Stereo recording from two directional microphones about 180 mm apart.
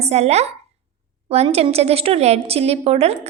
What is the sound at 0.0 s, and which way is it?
A woman's voice, 35° right (ahead or behind).